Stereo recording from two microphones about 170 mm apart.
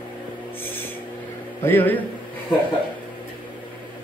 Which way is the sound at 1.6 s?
10° left (ahead or behind).